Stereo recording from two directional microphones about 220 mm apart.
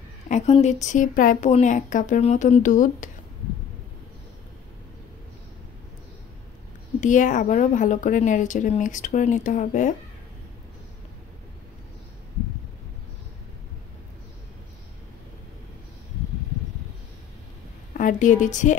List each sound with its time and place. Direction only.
0.3 s a woman's voice: 30° left (ahead or behind)
7.0 s a woman's voice: 35° left (ahead or behind)
17.9 s a woman's voice: 35° left (ahead or behind)